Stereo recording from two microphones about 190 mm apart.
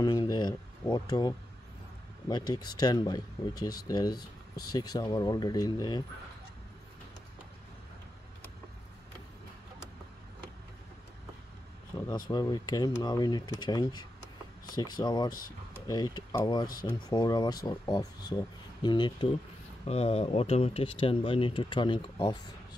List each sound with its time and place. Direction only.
0.0 s a sound: 20° left (ahead or behind)
2.2 s speech: 20° left (ahead or behind)
12.3 s speech: 20° left (ahead or behind)